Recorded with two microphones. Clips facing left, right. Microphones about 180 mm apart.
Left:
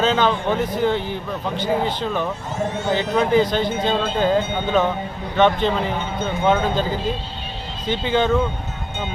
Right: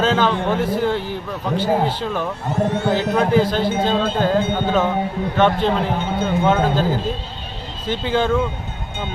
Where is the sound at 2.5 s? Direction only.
60° right (ahead or behind).